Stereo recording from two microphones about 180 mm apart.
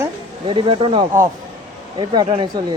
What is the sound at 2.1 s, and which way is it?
Speech, 25° right (ahead or behind).